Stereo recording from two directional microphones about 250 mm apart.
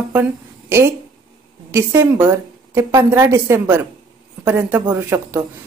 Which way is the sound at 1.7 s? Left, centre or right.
Centre.